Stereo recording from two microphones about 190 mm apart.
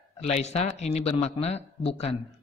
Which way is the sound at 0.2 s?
35° left (ahead or behind).